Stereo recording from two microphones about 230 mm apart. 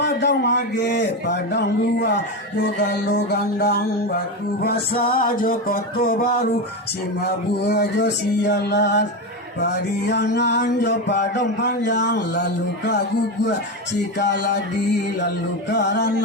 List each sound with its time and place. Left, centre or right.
0.0 s mantra: left
4.6 s music: left
7.2 s mantra: left
14.2 s mantra: left
15.7 s mantra: left